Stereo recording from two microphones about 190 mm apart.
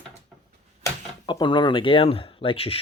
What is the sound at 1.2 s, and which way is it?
Speech, 25° left (ahead or behind).